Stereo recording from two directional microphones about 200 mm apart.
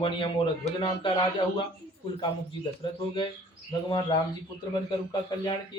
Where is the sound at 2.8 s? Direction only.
25° left (ahead or behind).